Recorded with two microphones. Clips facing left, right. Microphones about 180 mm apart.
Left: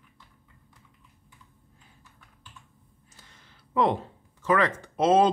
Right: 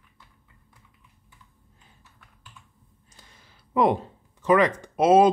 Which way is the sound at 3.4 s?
10° right (ahead or behind).